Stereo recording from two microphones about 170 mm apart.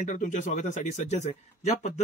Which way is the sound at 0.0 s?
50° left (ahead or behind).